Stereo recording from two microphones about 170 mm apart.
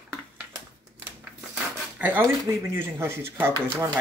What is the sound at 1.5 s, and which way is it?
Speech, 10° right (ahead or behind).